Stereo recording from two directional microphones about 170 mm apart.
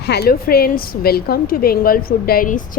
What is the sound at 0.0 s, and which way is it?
A woman's voice, 70° left (ahead or behind).